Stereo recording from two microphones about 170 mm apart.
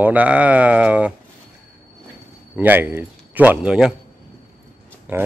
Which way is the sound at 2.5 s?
10° right (ahead or behind).